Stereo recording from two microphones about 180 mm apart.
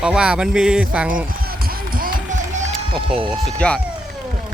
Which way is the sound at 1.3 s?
55° right (ahead or behind).